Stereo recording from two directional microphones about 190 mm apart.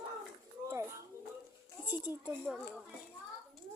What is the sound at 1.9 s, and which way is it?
Speech, 5° right (ahead or behind).